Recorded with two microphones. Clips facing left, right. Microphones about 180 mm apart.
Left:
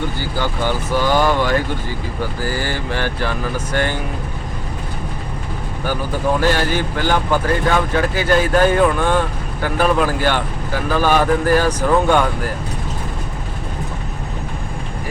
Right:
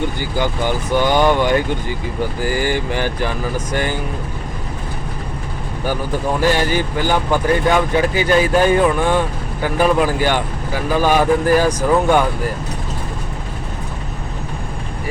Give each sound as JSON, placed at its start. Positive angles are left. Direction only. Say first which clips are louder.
{"t": 0.3, "sound": "speech", "louder": "right 2 dB", "side_deg": -15}
{"t": 6.4, "sound": "speech", "louder": "right 1 dB", "side_deg": -10}